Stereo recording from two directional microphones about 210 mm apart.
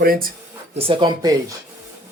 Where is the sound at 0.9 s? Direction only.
20° right (ahead or behind).